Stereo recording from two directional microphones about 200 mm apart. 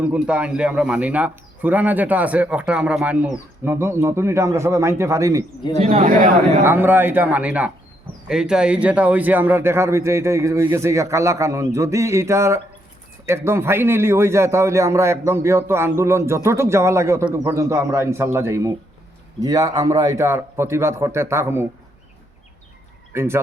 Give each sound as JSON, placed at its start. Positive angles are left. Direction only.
{"t": 0.0, "sound": "speech", "side_deg": -5}
{"t": 5.8, "sound": "speech", "side_deg": -30}
{"t": 6.1, "sound": "speech", "side_deg": -45}
{"t": 6.7, "sound": "speech", "side_deg": -10}
{"t": 23.1, "sound": "speech", "side_deg": -10}